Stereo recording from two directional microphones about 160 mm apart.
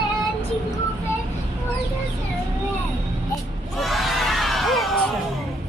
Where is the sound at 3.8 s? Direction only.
Centre (ahead or behind).